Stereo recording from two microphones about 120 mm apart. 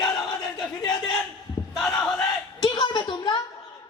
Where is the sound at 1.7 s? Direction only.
5° left (ahead or behind).